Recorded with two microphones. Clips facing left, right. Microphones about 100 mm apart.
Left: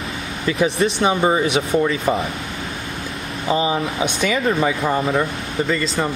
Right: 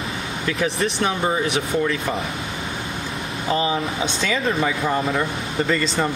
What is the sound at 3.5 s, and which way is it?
Speech, 15° left (ahead or behind).